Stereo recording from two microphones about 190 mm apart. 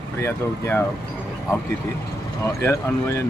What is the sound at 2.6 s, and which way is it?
Speech, 10° left (ahead or behind).